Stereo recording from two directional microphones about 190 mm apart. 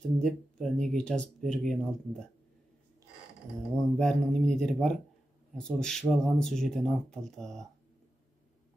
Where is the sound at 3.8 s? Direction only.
5° left (ahead or behind).